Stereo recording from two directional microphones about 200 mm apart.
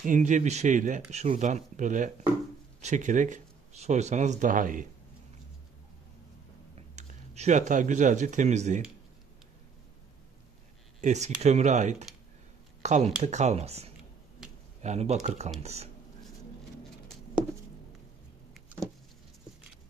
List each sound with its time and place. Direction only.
0.0 s speech: 40° right (ahead or behind)
6.7 s speech: 35° right (ahead or behind)
11.0 s speech: 35° right (ahead or behind)